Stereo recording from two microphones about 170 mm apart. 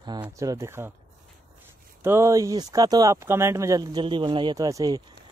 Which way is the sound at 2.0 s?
15° right (ahead or behind).